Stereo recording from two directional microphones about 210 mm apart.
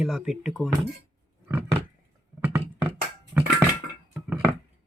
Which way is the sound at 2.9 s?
5° right (ahead or behind).